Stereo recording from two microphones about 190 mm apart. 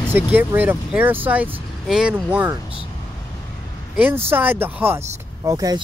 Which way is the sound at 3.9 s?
10° right (ahead or behind).